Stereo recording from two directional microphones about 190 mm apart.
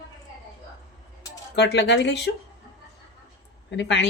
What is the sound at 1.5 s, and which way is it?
Speech, 60° left (ahead or behind).